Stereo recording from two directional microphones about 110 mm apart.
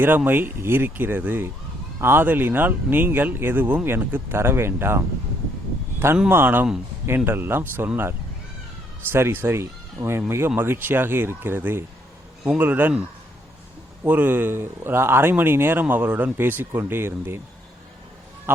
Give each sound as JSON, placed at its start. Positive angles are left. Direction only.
{"t": 0.3, "sound": "speech", "side_deg": -20}
{"t": 6.1, "sound": "speech", "side_deg": -15}
{"t": 9.1, "sound": "speech", "side_deg": -20}
{"t": 14.0, "sound": "speech", "side_deg": -15}
{"t": 18.5, "sound": "speech", "side_deg": -20}